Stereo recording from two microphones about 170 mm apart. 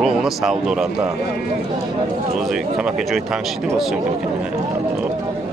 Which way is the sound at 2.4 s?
Centre (ahead or behind).